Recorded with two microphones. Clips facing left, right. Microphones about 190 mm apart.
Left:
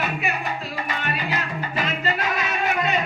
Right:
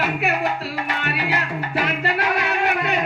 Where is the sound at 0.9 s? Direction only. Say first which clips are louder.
Right 2 dB; 70° right (ahead or behind).